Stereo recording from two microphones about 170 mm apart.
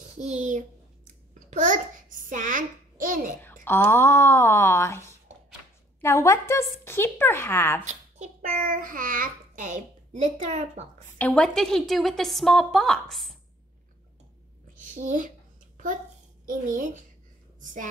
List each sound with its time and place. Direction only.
0.2 s speech: 45° right (ahead or behind)
1.5 s babbling: 50° right (ahead or behind)
3.3 s a sound: 10° left (ahead or behind)
5.9 s a woman's voice: 15° left (ahead or behind)
7.8 s a child's voice: 45° right (ahead or behind)
11.1 s a woman's voice: 5° left (ahead or behind)
14.8 s a woman's voice: 45° right (ahead or behind)
16.4 s speech: 50° right (ahead or behind)